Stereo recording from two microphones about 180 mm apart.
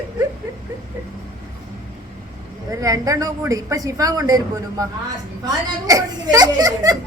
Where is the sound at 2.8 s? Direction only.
20° right (ahead or behind).